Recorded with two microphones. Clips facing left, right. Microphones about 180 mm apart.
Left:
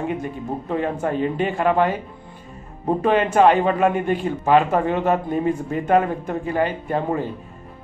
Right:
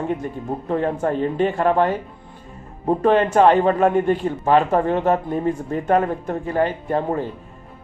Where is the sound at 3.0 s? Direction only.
15° left (ahead or behind).